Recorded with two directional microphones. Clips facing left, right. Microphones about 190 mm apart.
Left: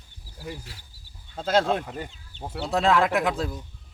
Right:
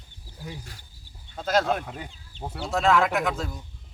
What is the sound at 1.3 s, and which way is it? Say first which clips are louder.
Speech: left 1 dB; 30° left (ahead or behind).